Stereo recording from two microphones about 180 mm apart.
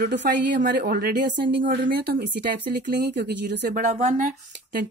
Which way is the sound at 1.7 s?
65° right (ahead or behind).